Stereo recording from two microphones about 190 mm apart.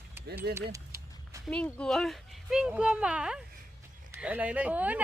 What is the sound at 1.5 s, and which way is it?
Speech, 5° left (ahead or behind).